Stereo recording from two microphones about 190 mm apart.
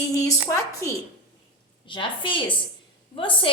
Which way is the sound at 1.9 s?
25° left (ahead or behind).